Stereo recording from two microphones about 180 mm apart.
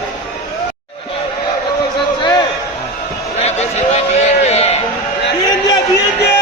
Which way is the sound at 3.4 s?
35° left (ahead or behind).